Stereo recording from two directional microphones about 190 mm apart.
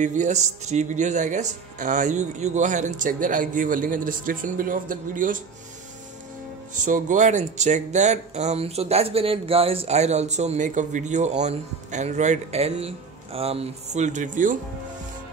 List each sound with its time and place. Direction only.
0.0 s speech: 40° right (ahead or behind)
6.7 s speech: 40° right (ahead or behind)